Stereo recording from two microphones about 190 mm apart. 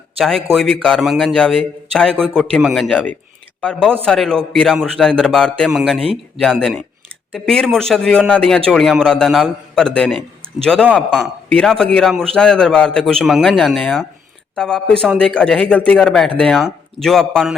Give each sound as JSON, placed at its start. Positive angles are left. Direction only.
{"t": 0.2, "sound": "a man's voice", "side_deg": 0}
{"t": 6.0, "sound": "speech", "side_deg": -30}
{"t": 6.4, "sound": "a man's voice", "side_deg": 0}